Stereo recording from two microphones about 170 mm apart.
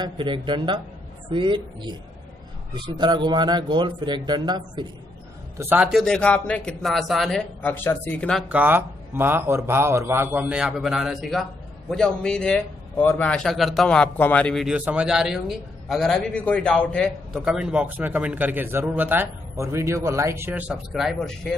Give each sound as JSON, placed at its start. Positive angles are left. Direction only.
{"t": 0.0, "sound": "speech", "side_deg": -30}
{"t": 5.6, "sound": "a man's voice", "side_deg": -10}
{"t": 8.5, "sound": "a man's voice", "side_deg": -10}
{"t": 17.5, "sound": "a man's voice", "side_deg": -5}